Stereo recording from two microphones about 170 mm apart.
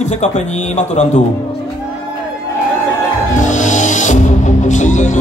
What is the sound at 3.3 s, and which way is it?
Music, 45° left (ahead or behind).